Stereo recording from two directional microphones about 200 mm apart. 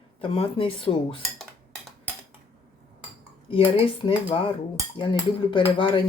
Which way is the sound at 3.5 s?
25° left (ahead or behind).